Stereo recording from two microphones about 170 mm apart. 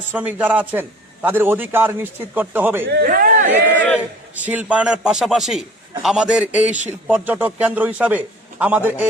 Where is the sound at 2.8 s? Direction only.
70° right (ahead or behind); by 3.4 s 50° right (ahead or behind).